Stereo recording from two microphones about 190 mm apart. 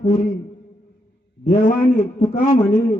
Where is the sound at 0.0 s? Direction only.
40° left (ahead or behind).